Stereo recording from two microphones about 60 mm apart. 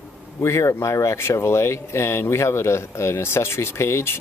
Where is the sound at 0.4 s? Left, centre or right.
Left.